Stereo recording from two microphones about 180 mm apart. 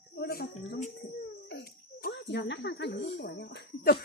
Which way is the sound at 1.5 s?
65° left (ahead or behind).